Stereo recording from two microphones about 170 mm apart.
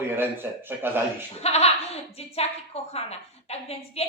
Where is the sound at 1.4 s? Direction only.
40° left (ahead or behind).